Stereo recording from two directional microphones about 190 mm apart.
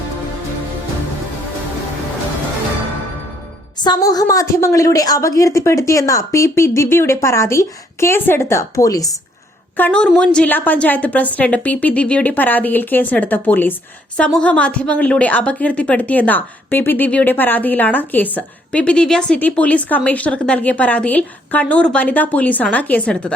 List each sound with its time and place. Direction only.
3.8 s a woman's voice: 20° left (ahead or behind)
9.7 s a woman's voice: 5° left (ahead or behind)